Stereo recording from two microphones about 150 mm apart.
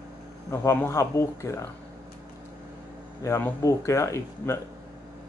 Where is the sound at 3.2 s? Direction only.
20° left (ahead or behind).